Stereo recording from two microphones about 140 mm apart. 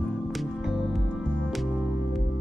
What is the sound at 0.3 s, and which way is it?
Music, centre (ahead or behind).